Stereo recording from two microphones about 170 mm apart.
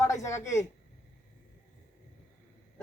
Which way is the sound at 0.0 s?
15° left (ahead or behind).